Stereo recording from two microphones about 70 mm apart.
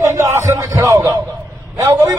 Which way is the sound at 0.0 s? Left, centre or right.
Right.